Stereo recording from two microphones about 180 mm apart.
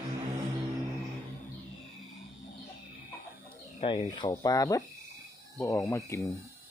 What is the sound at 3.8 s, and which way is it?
Speech, 25° left (ahead or behind).